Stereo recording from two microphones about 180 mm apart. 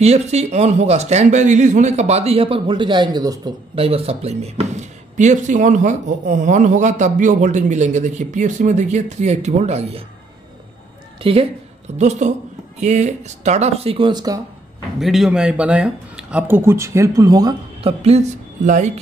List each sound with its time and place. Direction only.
0.0 s a man's voice: 35° right (ahead or behind)
11.1 s a woman's voice: 30° right (ahead or behind)
15.0 s speech: centre (ahead or behind); by 17.9 s 20° right (ahead or behind)
18.0 s a man's voice: 40° right (ahead or behind)